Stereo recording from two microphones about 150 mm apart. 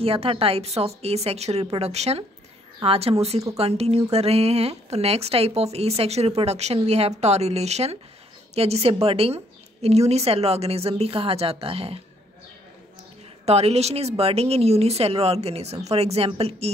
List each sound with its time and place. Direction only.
0.0 s speech: 40° right (ahead or behind)
13.5 s speech: 45° right (ahead or behind)